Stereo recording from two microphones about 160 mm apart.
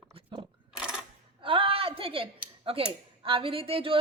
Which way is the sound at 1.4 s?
35° right (ahead or behind).